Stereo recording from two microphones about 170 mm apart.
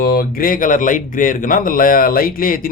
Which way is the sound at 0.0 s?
60° left (ahead or behind).